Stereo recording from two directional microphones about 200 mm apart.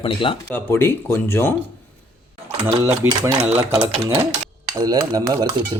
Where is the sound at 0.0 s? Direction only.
25° left (ahead or behind).